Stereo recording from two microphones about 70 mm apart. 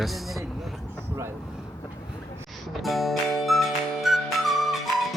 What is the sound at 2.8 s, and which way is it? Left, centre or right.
Music, centre.